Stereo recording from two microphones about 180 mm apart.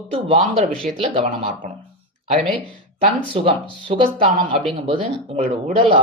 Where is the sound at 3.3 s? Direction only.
30° right (ahead or behind).